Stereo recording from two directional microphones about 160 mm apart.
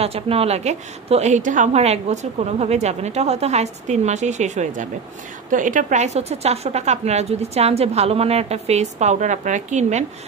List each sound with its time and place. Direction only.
0.0 s a woman's voice: 40° right (ahead or behind)